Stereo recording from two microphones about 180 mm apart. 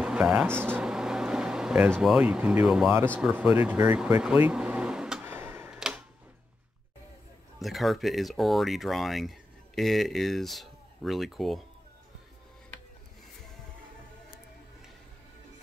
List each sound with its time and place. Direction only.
0.0 s air conditioning: 5° right (ahead or behind)
3.2 s vehicle: 5° right (ahead or behind)
7.5 s speech: centre (ahead or behind)